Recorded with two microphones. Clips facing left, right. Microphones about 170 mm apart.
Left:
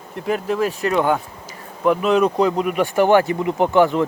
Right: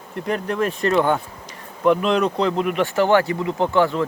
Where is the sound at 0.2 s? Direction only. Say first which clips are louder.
Left 2 dB; 5° left (ahead or behind).